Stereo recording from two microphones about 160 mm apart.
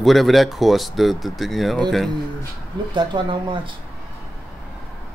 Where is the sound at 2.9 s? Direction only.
30° right (ahead or behind).